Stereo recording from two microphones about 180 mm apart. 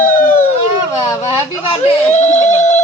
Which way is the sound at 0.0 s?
50° left (ahead or behind).